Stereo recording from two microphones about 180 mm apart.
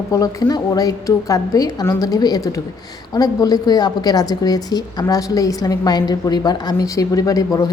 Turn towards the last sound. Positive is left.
turn(degrees=20)  # may be behind; listen again after turning